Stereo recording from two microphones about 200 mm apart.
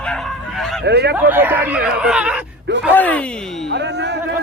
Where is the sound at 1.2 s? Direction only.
10° right (ahead or behind).